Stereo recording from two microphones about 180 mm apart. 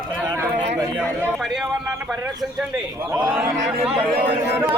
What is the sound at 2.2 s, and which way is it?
Bird, 10° right (ahead or behind).